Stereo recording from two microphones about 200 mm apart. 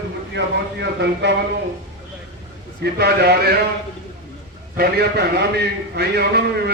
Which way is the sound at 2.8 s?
55° right (ahead or behind).